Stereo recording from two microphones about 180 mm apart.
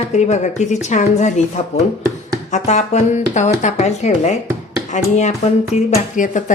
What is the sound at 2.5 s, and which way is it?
A woman's voice, 40° left (ahead or behind).